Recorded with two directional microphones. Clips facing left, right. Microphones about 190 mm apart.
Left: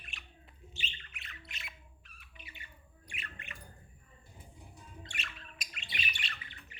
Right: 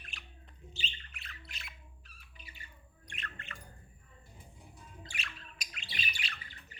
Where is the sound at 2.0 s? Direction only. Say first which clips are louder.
Left 1 dB; 35° right (ahead or behind).